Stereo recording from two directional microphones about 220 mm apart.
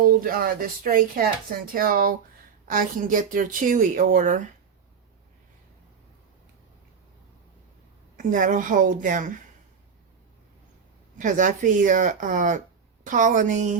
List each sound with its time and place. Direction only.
0.0 s a woman's voice: 40° right (ahead or behind)
8.1 s a woman's voice: 35° right (ahead or behind)
11.2 s a woman's voice: 35° right (ahead or behind)